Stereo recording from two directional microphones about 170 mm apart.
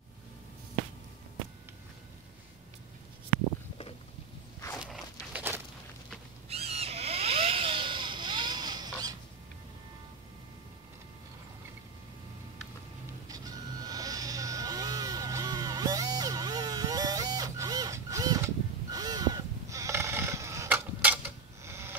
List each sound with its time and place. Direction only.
4.7 s walk: 5° right (ahead or behind)
5.3 s a sound: 15° right (ahead or behind)
6.5 s vehicle: 35° right (ahead or behind)
13.3 s vehicle: 20° right (ahead or behind)
21.6 s printer: 15° right (ahead or behind)